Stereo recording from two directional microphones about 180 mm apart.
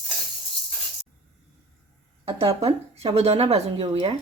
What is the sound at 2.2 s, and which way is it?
Speech, 30° right (ahead or behind).